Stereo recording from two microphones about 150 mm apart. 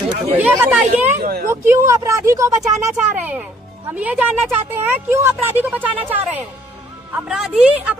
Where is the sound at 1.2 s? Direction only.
85° right.